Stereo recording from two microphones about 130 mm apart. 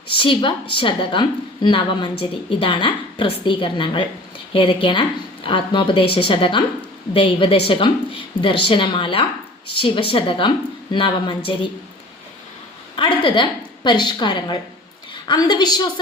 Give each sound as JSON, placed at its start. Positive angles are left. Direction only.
{"t": 0.1, "sound": "a woman's voice", "side_deg": 40}
{"t": 13.0, "sound": "a woman's voice", "side_deg": 40}